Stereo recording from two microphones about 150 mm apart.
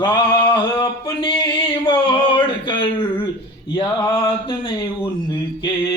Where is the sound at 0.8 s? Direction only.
30° left (ahead or behind).